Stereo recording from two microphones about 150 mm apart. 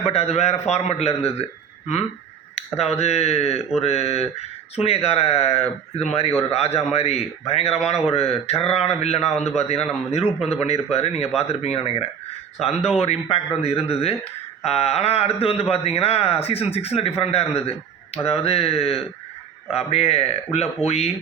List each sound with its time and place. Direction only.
0.0 s a man's voice: 45° left (ahead or behind)
2.7 s a man's voice: 45° left (ahead or behind)
6.7 s a man's voice: 45° left (ahead or behind)